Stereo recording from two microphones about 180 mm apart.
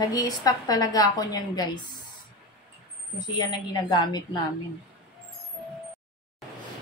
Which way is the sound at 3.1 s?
25° left (ahead or behind).